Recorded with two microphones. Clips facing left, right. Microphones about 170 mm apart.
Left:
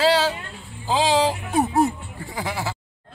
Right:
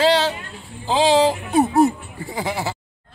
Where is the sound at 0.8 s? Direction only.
20° right (ahead or behind).